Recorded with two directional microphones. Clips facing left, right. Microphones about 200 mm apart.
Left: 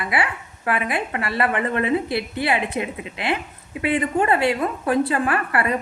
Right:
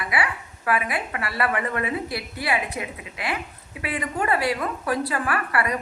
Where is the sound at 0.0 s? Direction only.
25° left (ahead or behind).